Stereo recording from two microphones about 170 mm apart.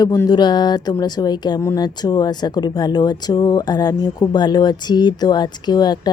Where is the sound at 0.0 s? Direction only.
20° left (ahead or behind).